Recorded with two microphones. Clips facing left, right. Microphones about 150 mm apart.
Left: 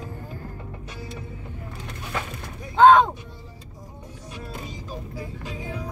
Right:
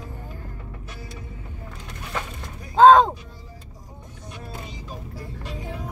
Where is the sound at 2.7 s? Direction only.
30° right (ahead or behind).